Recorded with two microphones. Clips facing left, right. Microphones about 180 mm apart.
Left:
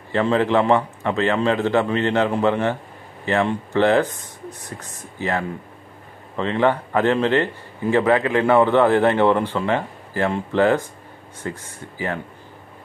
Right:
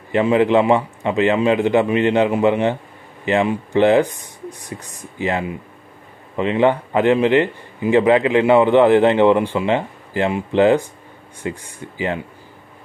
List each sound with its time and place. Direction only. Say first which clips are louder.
0.1 s a man's voice: right 4 dB; 15° right (ahead or behind)